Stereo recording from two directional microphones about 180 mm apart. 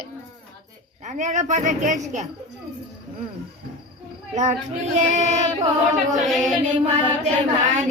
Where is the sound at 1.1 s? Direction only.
45° right (ahead or behind).